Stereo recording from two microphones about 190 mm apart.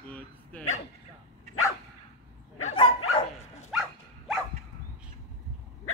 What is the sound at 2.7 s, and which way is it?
Dog, 30° left (ahead or behind).